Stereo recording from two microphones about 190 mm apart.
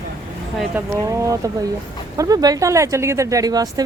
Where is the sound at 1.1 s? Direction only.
15° right (ahead or behind).